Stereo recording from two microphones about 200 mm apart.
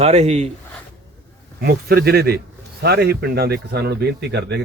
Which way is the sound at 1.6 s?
45° right (ahead or behind).